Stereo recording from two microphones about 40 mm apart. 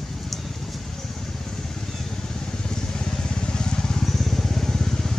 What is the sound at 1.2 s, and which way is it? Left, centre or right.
Vehicle, centre.